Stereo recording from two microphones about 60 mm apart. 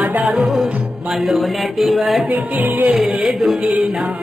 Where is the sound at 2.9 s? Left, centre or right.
Centre.